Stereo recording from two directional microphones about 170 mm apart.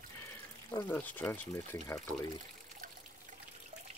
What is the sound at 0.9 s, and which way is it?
Speech, 10° left (ahead or behind).